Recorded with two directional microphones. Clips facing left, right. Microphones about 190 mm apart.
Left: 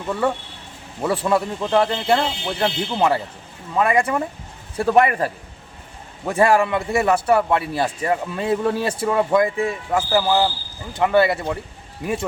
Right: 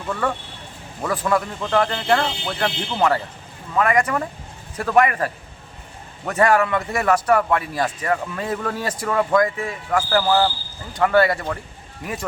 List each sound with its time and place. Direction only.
0.1 s a man's voice: 25° left (ahead or behind)
6.6 s a man's voice: 25° left (ahead or behind)
10.1 s a man's voice: 10° left (ahead or behind)